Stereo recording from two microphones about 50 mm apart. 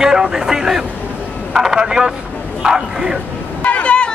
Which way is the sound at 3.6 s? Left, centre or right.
Left.